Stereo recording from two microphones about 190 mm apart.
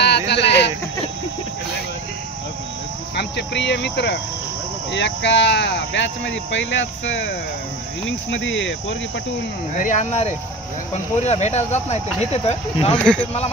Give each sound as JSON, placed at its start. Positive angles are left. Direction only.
{"t": 0.3, "sound": "a sound", "side_deg": 65}
{"t": 3.2, "sound": "cricket", "side_deg": 65}
{"t": 4.9, "sound": "speech", "side_deg": 65}
{"t": 9.8, "sound": "speech", "side_deg": 40}
{"t": 12.9, "sound": "speech", "side_deg": 5}